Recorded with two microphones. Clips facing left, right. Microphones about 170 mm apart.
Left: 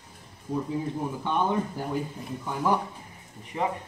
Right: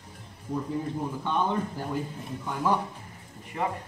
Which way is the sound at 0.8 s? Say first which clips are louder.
Left 1 dB; 15° left (ahead or behind).